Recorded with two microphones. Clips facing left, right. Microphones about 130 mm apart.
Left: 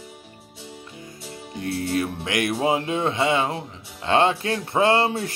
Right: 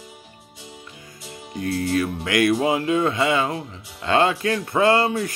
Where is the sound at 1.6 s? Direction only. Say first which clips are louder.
Right 2 dB; 25° left (ahead or behind).